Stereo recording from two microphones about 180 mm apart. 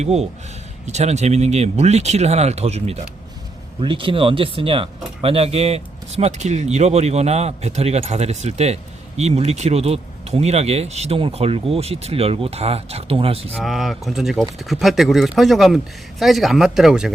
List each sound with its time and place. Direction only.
0.0 s speech: 35° right (ahead or behind)
13.5 s speech: centre (ahead or behind)